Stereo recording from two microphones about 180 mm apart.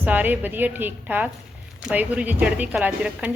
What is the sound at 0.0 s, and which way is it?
A woman's voice, 10° right (ahead or behind).